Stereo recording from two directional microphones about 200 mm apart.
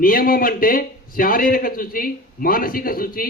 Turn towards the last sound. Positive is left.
turn(degrees=45)  # may be behind; listen again after turning